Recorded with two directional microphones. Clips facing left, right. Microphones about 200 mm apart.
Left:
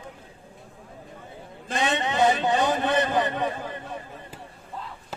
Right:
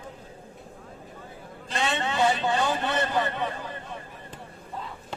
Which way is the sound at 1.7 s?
20° left (ahead or behind).